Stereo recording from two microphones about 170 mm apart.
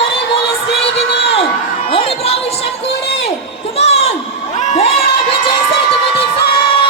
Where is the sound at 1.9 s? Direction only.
35° left (ahead or behind).